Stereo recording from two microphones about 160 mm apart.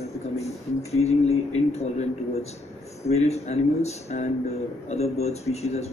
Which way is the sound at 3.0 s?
40° left (ahead or behind).